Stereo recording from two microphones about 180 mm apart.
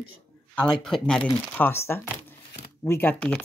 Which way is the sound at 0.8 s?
5° left (ahead or behind).